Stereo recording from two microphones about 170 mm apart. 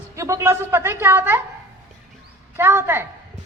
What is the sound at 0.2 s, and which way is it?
Speech, 15° right (ahead or behind).